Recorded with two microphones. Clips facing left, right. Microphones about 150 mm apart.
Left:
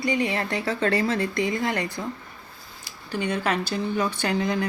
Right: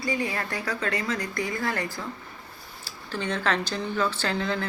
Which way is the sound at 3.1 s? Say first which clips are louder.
Left 2 dB; 10° left (ahead or behind).